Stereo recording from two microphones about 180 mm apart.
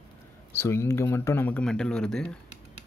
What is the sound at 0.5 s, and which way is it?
Speech, 15° left (ahead or behind).